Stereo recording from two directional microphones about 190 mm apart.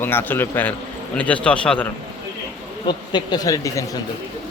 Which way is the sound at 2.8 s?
25° left (ahead or behind).